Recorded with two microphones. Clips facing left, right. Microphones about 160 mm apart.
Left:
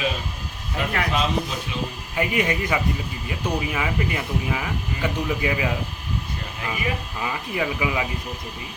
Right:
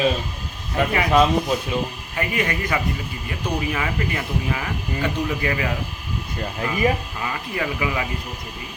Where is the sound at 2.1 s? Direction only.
15° left (ahead or behind).